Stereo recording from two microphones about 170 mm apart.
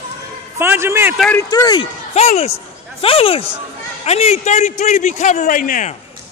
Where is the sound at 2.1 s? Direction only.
40° left (ahead or behind).